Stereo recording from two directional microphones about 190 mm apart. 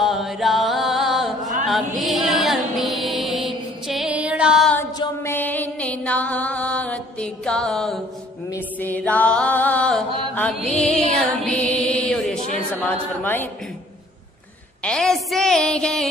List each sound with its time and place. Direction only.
0.0 s music: centre (ahead or behind)
1.7 s mantra: centre (ahead or behind)
4.9 s a sound: 20° left (ahead or behind)
5.3 s music: 10° left (ahead or behind)
8.7 s chant: 10° left (ahead or behind)
11.1 s music: 5° left (ahead or behind)
13.2 s a woman's voice: 10° left (ahead or behind)
14.8 s a woman's voice: 5° left (ahead or behind)